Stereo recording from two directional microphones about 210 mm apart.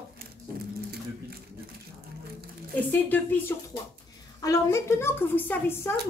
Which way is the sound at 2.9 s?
10° left (ahead or behind).